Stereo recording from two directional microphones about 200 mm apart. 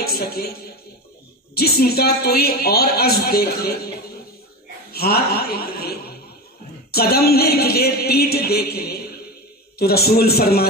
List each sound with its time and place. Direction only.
0.0 s a man's voice: 50° left (ahead or behind)
4.9 s a woman's voice: 50° left (ahead or behind)